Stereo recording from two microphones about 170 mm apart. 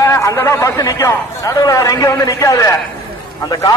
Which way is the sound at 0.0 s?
15° left (ahead or behind).